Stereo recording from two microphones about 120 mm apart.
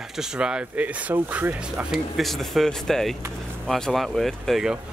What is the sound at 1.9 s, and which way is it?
Speech, centre (ahead or behind).